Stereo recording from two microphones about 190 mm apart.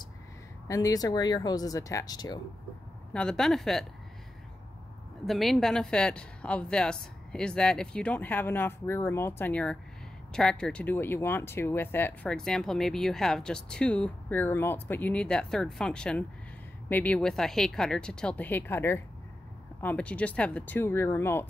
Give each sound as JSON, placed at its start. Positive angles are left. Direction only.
{"t": 0.7, "sound": "speech", "side_deg": 15}
{"t": 3.1, "sound": "speech", "side_deg": 5}
{"t": 5.2, "sound": "speech", "side_deg": 0}